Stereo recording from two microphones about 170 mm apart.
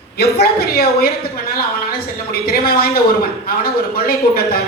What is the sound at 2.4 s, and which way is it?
Speech, 65° left (ahead or behind).